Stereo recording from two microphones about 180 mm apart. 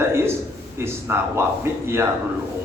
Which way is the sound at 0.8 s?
15° right (ahead or behind).